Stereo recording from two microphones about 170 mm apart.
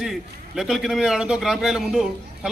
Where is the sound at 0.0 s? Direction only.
Centre (ahead or behind).